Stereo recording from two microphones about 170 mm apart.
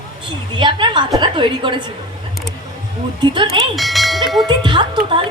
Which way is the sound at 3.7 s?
Centre (ahead or behind).